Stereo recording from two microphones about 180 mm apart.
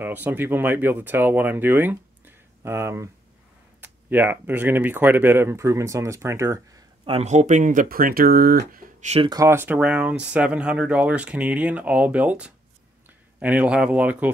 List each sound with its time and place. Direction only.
0.0 s speech: 10° right (ahead or behind)
7.1 s speech: 40° right (ahead or behind)
9.3 s speech: 15° right (ahead or behind)